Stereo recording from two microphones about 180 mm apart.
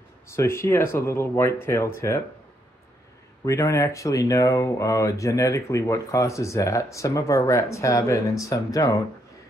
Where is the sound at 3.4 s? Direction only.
15° left (ahead or behind).